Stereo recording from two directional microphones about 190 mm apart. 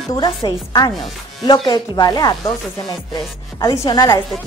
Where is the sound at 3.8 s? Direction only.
20° left (ahead or behind).